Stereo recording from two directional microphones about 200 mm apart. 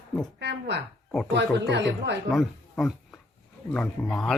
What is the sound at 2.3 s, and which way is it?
Speech, centre (ahead or behind).